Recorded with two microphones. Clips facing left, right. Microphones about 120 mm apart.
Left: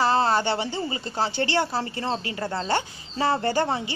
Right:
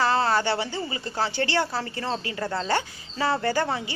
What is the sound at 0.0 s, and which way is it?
Speech, 25° left (ahead or behind).